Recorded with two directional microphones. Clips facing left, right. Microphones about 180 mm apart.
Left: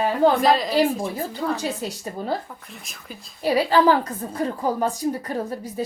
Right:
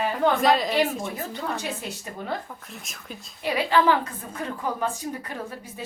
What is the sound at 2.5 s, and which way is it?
Speech, centre (ahead or behind).